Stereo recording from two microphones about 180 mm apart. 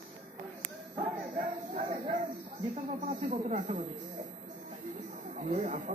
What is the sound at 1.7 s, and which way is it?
Speech, 40° right (ahead or behind).